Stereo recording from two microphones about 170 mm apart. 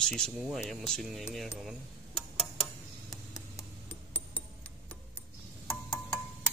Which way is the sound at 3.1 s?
20° left (ahead or behind).